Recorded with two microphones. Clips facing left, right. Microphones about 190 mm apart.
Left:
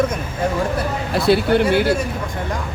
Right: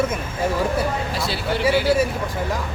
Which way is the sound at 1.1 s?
55° left (ahead or behind).